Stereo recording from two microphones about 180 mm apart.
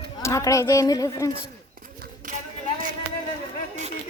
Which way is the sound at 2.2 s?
50° right (ahead or behind).